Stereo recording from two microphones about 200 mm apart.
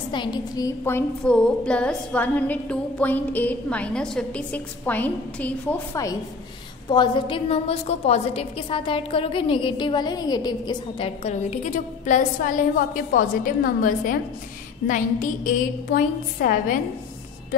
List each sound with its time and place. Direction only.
0.1 s a woman's voice: 20° left (ahead or behind)
6.9 s a woman's voice: 20° left (ahead or behind); by 16.7 s 45° left (ahead or behind)